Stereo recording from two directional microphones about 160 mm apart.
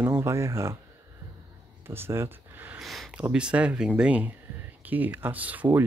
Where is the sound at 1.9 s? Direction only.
15° right (ahead or behind).